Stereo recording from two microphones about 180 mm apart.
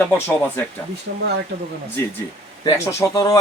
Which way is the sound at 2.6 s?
15° left (ahead or behind).